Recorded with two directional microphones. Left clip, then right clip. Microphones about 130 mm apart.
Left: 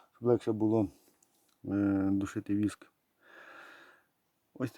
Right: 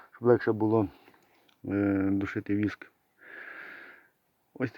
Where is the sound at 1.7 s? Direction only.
40° left (ahead or behind).